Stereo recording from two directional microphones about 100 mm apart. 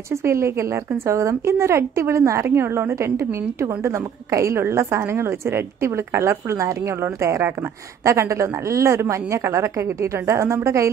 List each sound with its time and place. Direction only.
0.1 s a woman's voice: 30° right (ahead or behind)